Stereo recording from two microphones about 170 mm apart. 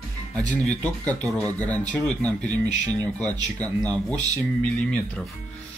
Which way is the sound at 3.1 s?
10° left (ahead or behind).